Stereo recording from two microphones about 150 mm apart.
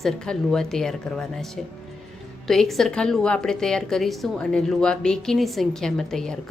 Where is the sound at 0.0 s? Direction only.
5° left (ahead or behind).